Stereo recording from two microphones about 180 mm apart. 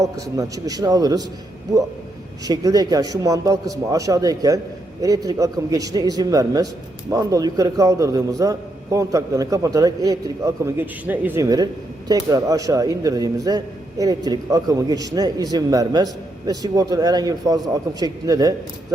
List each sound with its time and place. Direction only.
0.0 s a man's voice: 20° right (ahead or behind)
2.5 s a man's voice: 20° right (ahead or behind)